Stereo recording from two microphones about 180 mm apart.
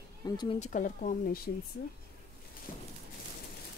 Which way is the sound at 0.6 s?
45° left (ahead or behind).